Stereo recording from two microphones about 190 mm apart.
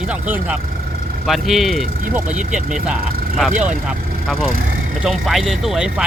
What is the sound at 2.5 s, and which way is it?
Speech, 5° right (ahead or behind).